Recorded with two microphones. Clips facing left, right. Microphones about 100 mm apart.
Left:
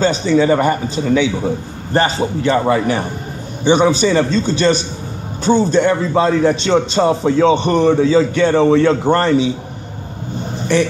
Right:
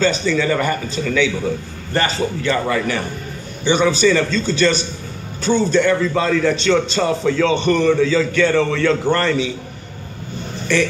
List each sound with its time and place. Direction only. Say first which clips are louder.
0.0 s a man's voice: left 4 dB; 20° left (ahead or behind)